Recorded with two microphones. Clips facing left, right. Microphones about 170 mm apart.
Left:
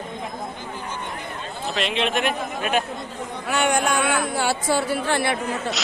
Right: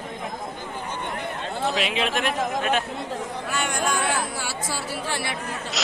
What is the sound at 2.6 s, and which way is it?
Speech, 10° left (ahead or behind).